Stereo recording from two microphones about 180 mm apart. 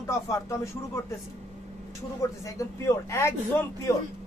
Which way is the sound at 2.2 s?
15° left (ahead or behind).